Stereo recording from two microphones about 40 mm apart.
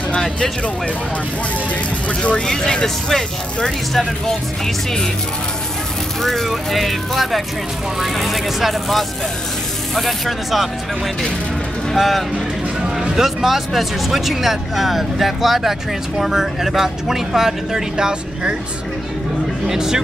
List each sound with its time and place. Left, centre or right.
2.0 s speech: left
2.4 s speech: centre
6.2 s speech: centre
11.9 s speech: centre
13.0 s speech: centre
19.7 s speech: centre